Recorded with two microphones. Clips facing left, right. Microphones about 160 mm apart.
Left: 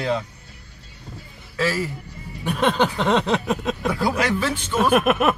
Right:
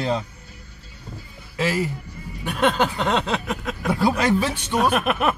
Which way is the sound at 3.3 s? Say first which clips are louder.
Left 4 dB; 20° left (ahead or behind).